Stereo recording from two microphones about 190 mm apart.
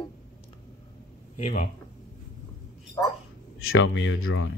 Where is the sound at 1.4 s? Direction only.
45° left (ahead or behind).